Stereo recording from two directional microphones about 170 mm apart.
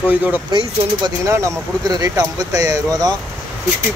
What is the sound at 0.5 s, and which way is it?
Speech, 20° right (ahead or behind).